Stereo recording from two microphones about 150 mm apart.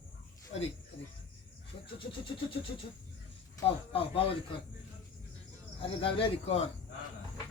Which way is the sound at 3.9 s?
40° left (ahead or behind).